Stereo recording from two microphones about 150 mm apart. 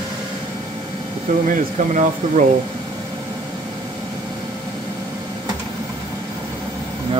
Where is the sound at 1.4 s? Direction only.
60° right (ahead or behind).